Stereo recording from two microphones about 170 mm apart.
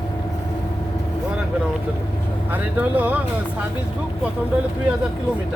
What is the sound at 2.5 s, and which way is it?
Speech, 10° right (ahead or behind).